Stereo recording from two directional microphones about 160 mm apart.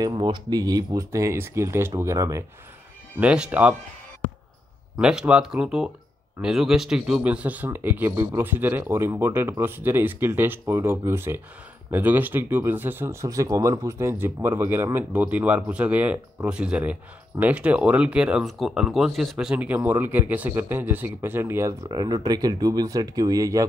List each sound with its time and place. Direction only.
0.0 s speech: 30° right (ahead or behind)
3.2 s speech: 10° right (ahead or behind)
4.9 s speech: 5° right (ahead or behind); by 23.6 s 20° right (ahead or behind)